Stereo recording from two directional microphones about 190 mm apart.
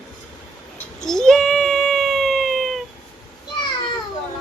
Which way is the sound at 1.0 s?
5° left (ahead or behind).